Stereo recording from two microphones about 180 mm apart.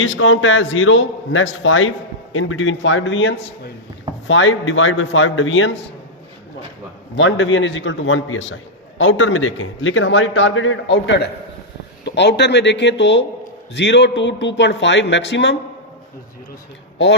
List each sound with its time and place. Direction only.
0.0 s a man's voice: 90° left
7.2 s a man's voice: 90° left